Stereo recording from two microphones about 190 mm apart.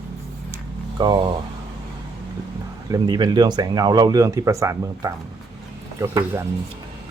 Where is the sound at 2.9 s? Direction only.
20° right (ahead or behind).